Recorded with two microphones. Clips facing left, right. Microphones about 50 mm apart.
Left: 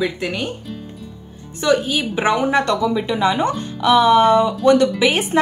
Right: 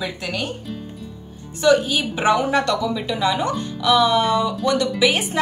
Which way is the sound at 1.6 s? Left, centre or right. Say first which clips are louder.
Right 1 dB; left.